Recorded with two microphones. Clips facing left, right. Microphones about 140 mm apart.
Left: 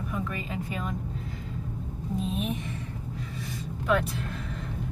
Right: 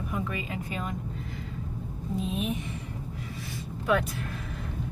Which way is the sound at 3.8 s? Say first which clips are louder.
Even; 5° right (ahead or behind).